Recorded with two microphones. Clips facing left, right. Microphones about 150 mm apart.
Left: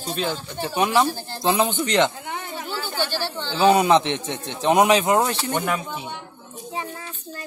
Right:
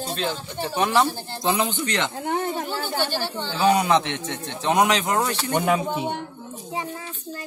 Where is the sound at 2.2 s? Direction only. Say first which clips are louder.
Right 6 dB; 45° right (ahead or behind).